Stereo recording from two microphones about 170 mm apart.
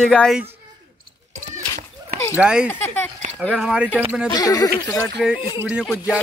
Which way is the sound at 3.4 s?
5° right (ahead or behind).